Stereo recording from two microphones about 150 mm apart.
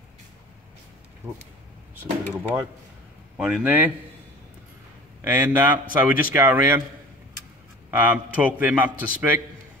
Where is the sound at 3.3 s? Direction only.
10° right (ahead or behind).